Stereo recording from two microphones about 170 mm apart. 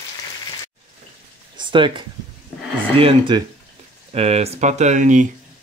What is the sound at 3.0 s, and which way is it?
Speech, 30° right (ahead or behind).